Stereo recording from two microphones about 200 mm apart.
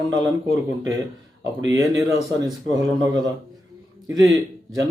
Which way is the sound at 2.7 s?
15° right (ahead or behind).